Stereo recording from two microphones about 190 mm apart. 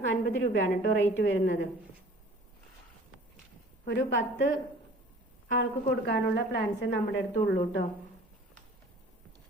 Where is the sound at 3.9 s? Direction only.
65° left (ahead or behind).